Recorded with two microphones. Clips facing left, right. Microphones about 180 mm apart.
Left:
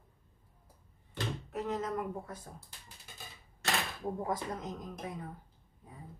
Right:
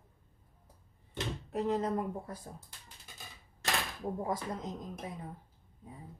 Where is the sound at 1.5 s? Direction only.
35° right (ahead or behind).